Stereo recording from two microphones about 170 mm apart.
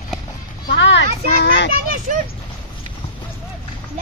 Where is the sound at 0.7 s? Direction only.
90° left.